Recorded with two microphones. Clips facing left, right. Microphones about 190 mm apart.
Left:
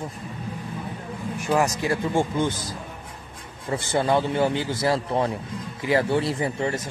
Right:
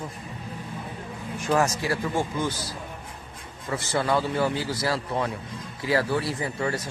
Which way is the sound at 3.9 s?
25° left (ahead or behind).